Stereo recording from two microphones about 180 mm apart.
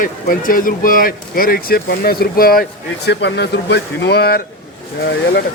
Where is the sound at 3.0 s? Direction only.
70° left (ahead or behind).